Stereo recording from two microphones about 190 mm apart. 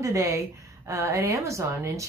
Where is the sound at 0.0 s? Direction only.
15° right (ahead or behind).